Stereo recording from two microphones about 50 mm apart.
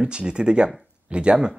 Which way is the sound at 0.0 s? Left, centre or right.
Centre.